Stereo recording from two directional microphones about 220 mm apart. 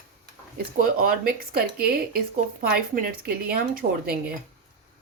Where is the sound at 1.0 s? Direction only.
40° right (ahead or behind).